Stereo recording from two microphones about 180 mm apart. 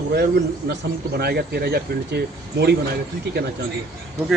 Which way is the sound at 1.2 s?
65° right (ahead or behind).